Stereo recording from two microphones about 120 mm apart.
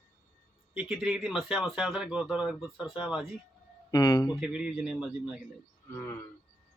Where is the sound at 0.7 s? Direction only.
5° right (ahead or behind).